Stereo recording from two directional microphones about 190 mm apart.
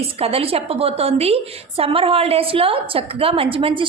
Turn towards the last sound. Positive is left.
turn(degrees=-25)  # may be behind; listen again after turning